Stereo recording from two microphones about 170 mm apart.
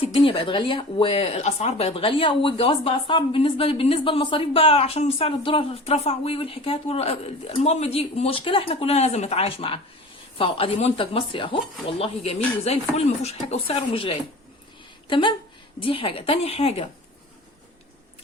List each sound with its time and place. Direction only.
0.0 s speech: 35° left (ahead or behind)